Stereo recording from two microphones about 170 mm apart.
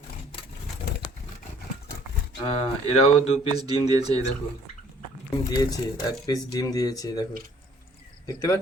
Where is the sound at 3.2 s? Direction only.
35° left (ahead or behind).